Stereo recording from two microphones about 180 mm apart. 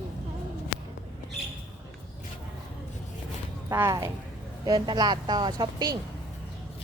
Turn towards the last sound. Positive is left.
turn(degrees=-20)  # may be behind; listen again after turning